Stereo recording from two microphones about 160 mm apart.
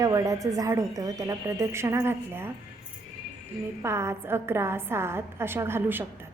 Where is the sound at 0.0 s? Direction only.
20° right (ahead or behind).